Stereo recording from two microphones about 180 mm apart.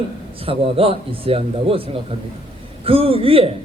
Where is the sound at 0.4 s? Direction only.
30° right (ahead or behind).